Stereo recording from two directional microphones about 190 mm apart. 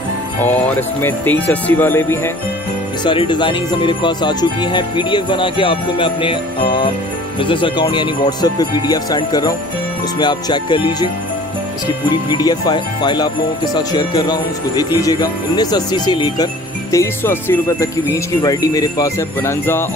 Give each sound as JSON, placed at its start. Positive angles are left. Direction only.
{"t": 0.4, "sound": "speech", "side_deg": 10}
{"t": 3.0, "sound": "speech", "side_deg": 25}
{"t": 12.3, "sound": "speech", "side_deg": 20}